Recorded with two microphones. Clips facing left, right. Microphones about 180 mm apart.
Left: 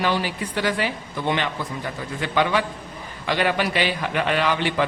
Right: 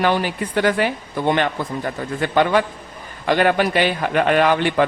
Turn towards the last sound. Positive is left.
turn(degrees=-50)  # may be behind; listen again after turning